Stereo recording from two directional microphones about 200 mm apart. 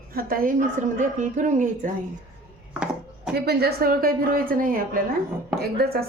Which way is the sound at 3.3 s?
50° right (ahead or behind).